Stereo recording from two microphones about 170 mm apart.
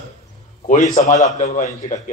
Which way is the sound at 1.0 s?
45° left (ahead or behind).